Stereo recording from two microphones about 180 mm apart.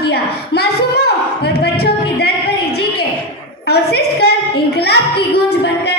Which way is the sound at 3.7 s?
65° left (ahead or behind).